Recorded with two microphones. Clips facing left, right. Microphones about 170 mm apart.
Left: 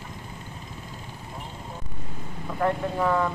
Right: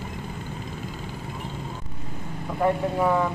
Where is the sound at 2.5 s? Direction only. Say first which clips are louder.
Right 2 dB; 10° right (ahead or behind).